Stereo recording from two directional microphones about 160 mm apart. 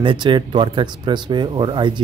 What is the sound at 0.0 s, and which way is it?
Speech, 30° right (ahead or behind).